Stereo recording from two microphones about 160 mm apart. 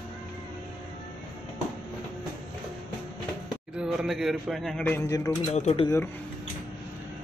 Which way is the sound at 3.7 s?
5° right (ahead or behind).